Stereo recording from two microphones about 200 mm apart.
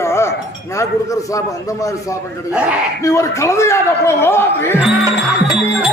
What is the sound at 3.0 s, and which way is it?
A man's voice, 15° left (ahead or behind).